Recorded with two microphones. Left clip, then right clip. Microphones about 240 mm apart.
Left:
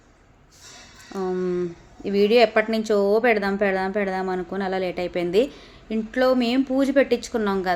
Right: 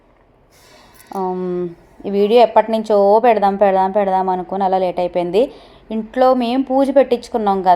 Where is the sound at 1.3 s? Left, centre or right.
Right.